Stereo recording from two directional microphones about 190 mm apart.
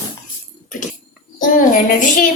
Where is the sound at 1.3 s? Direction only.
45° left (ahead or behind).